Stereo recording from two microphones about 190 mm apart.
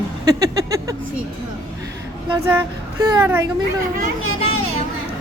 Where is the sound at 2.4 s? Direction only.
15° right (ahead or behind).